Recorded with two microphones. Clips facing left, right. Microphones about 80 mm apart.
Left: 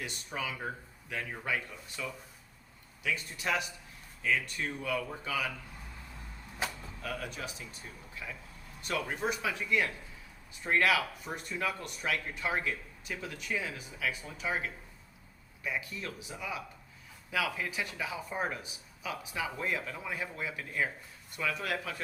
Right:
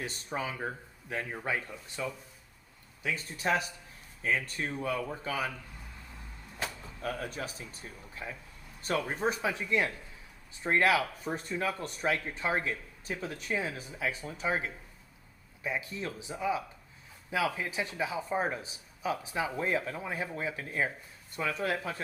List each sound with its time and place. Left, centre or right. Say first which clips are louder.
0.0 s speech: right 3 dB; right
7.0 s speech: right 3 dB; right